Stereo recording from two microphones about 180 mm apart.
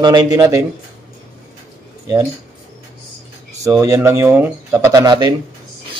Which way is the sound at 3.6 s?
15° right (ahead or behind).